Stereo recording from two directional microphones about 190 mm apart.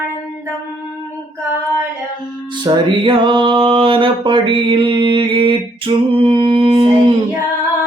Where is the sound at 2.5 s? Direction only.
25° right (ahead or behind).